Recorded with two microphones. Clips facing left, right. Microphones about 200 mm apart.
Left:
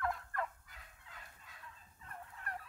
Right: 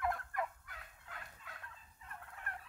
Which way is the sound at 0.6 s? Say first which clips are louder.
Right 4 dB; 70° right (ahead or behind).